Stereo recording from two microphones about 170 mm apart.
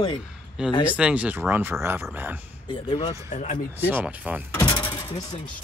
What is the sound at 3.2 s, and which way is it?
Speech, 45° left (ahead or behind).